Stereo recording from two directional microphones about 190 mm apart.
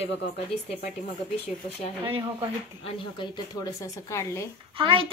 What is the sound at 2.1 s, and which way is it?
Speech, 30° right (ahead or behind).